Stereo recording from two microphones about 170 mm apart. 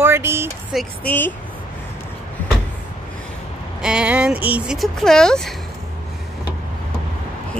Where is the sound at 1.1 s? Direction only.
10° left (ahead or behind).